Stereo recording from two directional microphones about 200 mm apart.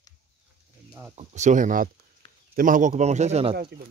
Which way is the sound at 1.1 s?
35° right (ahead or behind).